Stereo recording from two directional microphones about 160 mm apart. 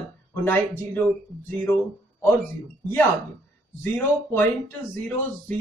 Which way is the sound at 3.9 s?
10° left (ahead or behind).